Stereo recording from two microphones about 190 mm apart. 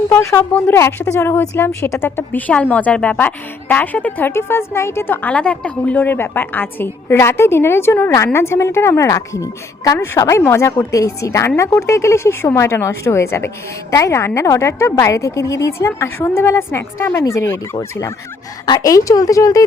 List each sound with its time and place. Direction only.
0.1 s a woman's voice: 15° left (ahead or behind)